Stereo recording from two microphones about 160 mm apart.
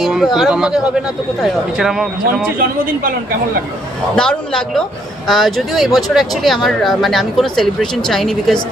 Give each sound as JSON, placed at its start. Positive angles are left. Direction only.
{"t": 0.0, "sound": "speech", "side_deg": 0}
{"t": 2.6, "sound": "speech", "side_deg": -60}
{"t": 4.1, "sound": "speech", "side_deg": 5}